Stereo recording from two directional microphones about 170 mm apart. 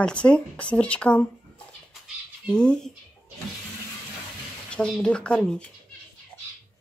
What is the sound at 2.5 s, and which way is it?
Speech, 5° left (ahead or behind).